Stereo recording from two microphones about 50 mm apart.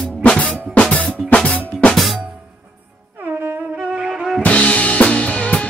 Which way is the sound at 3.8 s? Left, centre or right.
Centre.